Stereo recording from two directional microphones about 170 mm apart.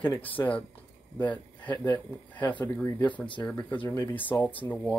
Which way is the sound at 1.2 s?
10° left (ahead or behind).